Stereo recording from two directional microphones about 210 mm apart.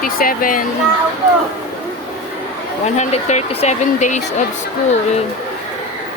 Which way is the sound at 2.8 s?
35° left (ahead or behind).